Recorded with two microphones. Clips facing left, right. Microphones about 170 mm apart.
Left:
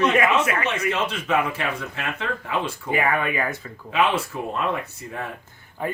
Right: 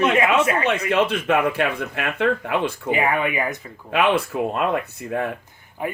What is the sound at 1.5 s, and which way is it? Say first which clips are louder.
Speech: right 5 dB; 60° right (ahead or behind).